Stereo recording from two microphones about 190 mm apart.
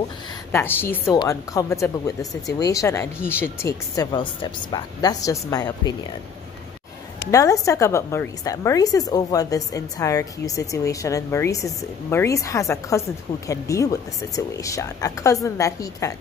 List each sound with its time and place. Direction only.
0.5 s a woman's voice: 10° left (ahead or behind)
7.2 s a woman's voice: 15° left (ahead or behind)